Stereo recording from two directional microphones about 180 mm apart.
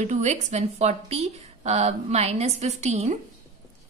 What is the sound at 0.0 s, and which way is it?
Speech, 40° right (ahead or behind).